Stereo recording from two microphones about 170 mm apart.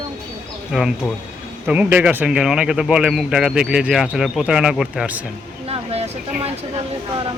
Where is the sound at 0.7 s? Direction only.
Centre (ahead or behind).